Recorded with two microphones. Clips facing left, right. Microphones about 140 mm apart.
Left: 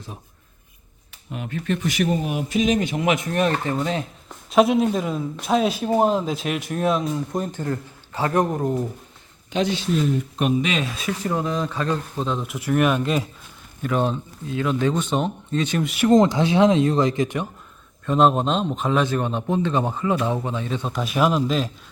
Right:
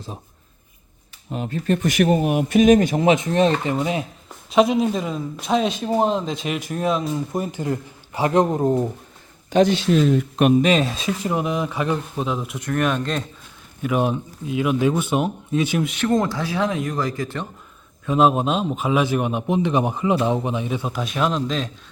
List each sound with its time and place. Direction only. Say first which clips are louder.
1.3 s speech: right 4 dB; 35° right (ahead or behind); by 4.0 s 15° right (ahead or behind)
4.5 s speech: even; centre (ahead or behind); by 8.9 s 25° right (ahead or behind)
9.5 s a man's voice: right 6 dB; 45° right (ahead or behind)
9.7 s speech: right 4 dB; 85° right
10.6 s speech: right 6 dB; 40° right (ahead or behind)
10.9 s speech: right 1 dB; 20° right (ahead or behind)
12.4 s speech: left 2 dB; centre (ahead or behind)
13.8 s speech: right 2 dB; 10° right (ahead or behind)
16.0 s speech: left 7 dB; 20° left (ahead or behind)
18.0 s speech: even; 5° right (ahead or behind)